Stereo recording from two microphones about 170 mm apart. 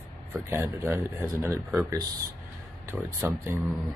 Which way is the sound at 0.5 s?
15° right (ahead or behind).